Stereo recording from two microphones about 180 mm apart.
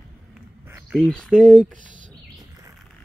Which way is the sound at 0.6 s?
10° right (ahead or behind).